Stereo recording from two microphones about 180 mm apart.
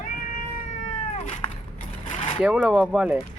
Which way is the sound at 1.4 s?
25° left (ahead or behind).